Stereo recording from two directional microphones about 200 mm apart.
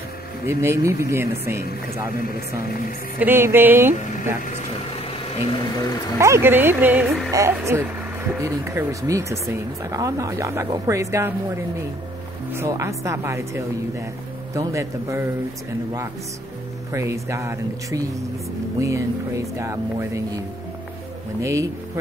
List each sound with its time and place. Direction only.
0.5 s speech: 15° right (ahead or behind)
3.2 s speech: 10° right (ahead or behind)
5.3 s speech: 30° left (ahead or behind)
6.1 s speech: 15° right (ahead or behind)
16.9 s speech: 15° right (ahead or behind)
21.4 s speech: 15° right (ahead or behind)